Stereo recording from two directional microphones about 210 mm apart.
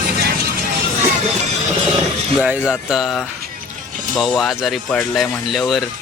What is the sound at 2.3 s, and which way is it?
Speech, 5° right (ahead or behind).